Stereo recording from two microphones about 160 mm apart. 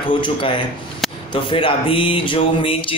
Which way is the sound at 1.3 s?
30° left (ahead or behind).